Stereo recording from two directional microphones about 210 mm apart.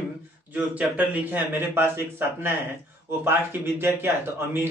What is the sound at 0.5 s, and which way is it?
A man's voice, 5° right (ahead or behind).